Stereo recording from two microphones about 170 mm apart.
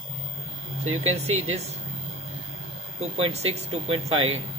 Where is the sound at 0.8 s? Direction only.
40° right (ahead or behind).